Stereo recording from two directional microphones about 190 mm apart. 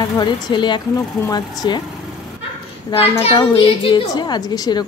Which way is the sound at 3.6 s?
25° left (ahead or behind).